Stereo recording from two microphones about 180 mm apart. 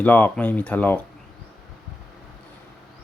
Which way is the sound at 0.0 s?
10° left (ahead or behind).